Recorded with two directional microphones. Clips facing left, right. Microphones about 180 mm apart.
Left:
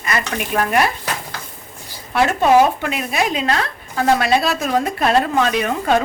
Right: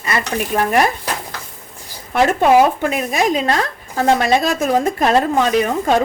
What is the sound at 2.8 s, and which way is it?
A woman's voice, 40° right (ahead or behind).